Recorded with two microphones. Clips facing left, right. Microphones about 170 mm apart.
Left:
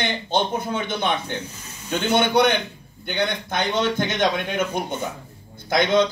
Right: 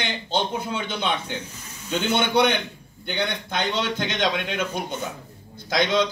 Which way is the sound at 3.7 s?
50° left (ahead or behind).